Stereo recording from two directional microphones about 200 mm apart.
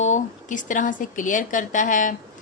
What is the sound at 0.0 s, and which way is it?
Speech, 35° left (ahead or behind).